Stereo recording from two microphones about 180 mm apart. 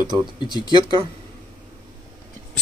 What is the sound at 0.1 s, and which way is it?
Speech, 25° right (ahead or behind).